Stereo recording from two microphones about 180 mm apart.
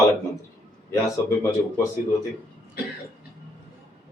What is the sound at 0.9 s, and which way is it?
Speech, 15° left (ahead or behind).